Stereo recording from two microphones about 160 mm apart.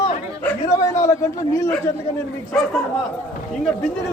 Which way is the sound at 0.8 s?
20° left (ahead or behind).